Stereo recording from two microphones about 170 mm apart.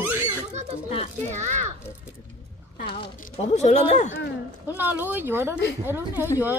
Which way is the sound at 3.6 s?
40° left (ahead or behind).